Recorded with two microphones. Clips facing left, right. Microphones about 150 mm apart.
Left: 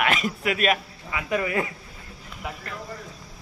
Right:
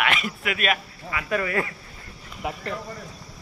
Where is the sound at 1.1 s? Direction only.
20° left (ahead or behind).